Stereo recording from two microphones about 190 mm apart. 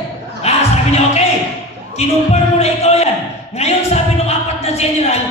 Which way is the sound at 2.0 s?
35° left (ahead or behind).